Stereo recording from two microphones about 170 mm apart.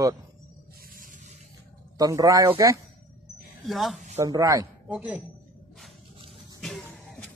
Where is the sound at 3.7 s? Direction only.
Centre (ahead or behind).